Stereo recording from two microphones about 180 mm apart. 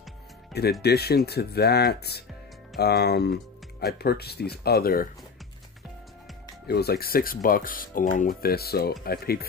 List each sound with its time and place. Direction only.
0.5 s speech: 65° left (ahead or behind)
6.7 s speech: 60° left (ahead or behind)